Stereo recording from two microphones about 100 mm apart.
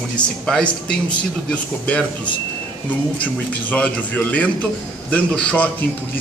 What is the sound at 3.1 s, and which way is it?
A man's voice, 15° left (ahead or behind).